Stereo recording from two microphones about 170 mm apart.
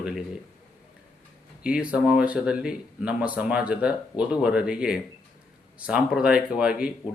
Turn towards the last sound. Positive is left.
turn(degrees=-5)  # may be behind; listen again after turning